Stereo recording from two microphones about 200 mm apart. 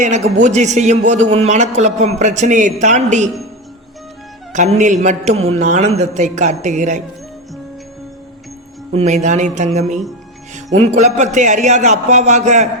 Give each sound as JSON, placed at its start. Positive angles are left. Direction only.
{"t": 0.4, "sound": "a man's voice", "side_deg": -35}
{"t": 4.5, "sound": "a man's voice", "side_deg": -35}
{"t": 8.9, "sound": "a man's voice", "side_deg": -35}